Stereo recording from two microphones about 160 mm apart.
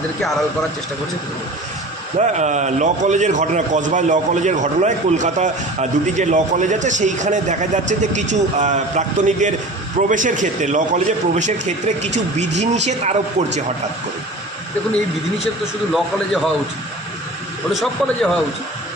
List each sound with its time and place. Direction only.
2.1 s a man's voice: 45° right (ahead or behind)
15.9 s a man's voice: centre (ahead or behind)
17.7 s a man's voice: centre (ahead or behind)